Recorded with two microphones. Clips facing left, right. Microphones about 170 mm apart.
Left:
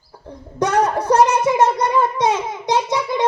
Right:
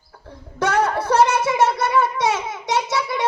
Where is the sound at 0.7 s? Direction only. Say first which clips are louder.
Left 2 dB; 15° left (ahead or behind).